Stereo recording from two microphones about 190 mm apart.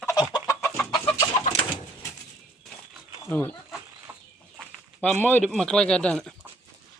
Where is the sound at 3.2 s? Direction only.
10° left (ahead or behind).